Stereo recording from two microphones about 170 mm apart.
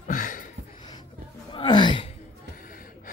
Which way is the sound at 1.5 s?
25° left (ahead or behind).